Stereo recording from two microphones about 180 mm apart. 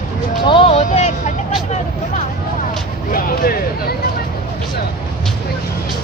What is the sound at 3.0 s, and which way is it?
Speech, 55° left (ahead or behind).